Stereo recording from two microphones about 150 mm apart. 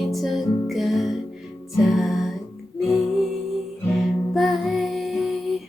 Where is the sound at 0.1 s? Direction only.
Centre (ahead or behind).